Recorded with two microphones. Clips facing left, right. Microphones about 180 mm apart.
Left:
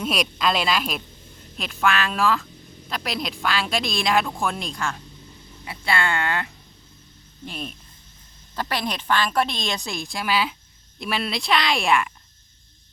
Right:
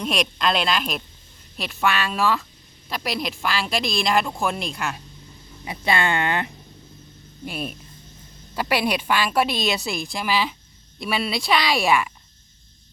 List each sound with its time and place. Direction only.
0.0 s a woman's voice: 5° left (ahead or behind)
5.6 s speech: 20° right (ahead or behind)
7.4 s a woman's voice: 10° right (ahead or behind)